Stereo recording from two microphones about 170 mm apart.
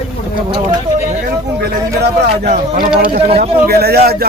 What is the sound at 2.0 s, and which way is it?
Speech, 75° right (ahead or behind).